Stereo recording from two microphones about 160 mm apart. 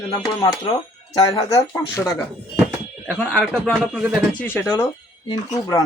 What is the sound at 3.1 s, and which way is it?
A man's voice, 5° left (ahead or behind).